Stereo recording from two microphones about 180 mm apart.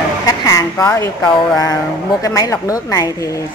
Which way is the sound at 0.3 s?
20° left (ahead or behind).